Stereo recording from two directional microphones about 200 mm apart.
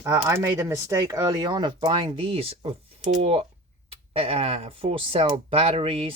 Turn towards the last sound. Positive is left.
turn(degrees=-30)  # may be behind; listen again after turning